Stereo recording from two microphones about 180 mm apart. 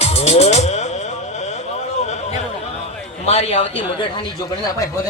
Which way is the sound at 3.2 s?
35° left (ahead or behind).